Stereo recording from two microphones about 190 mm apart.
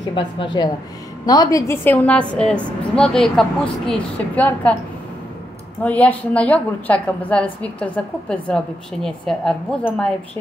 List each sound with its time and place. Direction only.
0.1 s a woman's voice: 25° left (ahead or behind); by 4.7 s 10° left (ahead or behind)
5.8 s a woman's voice: 10° left (ahead or behind)